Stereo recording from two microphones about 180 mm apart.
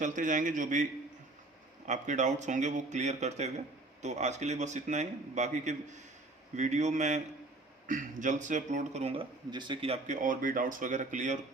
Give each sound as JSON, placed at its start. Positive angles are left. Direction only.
{"t": 0.0, "sound": "speech", "side_deg": -45}
{"t": 1.9, "sound": "a man's voice", "side_deg": -40}
{"t": 9.5, "sound": "speech", "side_deg": -25}
{"t": 10.2, "sound": "speech", "side_deg": -50}